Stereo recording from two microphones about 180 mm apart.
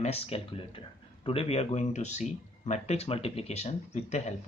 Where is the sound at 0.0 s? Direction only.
35° left (ahead or behind).